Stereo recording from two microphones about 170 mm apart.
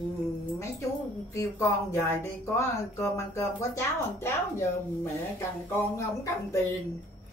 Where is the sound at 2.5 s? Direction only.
15° left (ahead or behind).